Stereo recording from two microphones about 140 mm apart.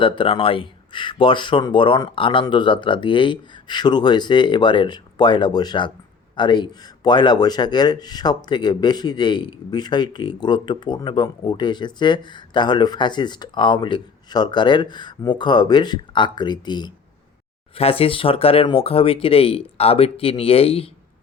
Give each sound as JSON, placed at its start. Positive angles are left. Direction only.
{"t": 0.0, "sound": "speech", "side_deg": 40}
{"t": 17.7, "sound": "speech", "side_deg": 45}